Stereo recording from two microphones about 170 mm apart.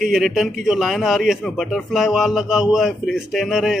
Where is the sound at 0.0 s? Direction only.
Centre (ahead or behind).